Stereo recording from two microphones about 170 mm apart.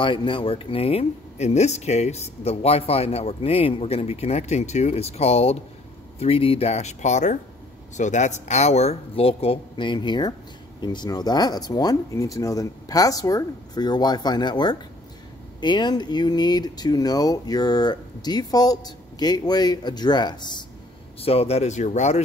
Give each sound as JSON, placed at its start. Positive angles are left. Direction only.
{"t": 0.0, "sound": "speech", "side_deg": 30}